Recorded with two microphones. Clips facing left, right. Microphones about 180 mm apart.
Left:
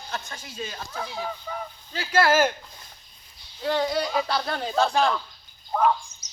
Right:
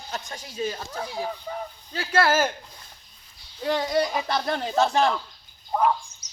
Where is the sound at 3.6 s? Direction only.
15° right (ahead or behind).